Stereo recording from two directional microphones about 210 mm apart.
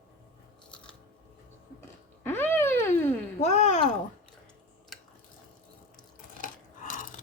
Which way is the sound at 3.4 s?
35° left (ahead or behind).